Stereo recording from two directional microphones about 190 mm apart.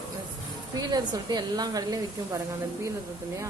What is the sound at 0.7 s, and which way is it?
Speech, 20° right (ahead or behind).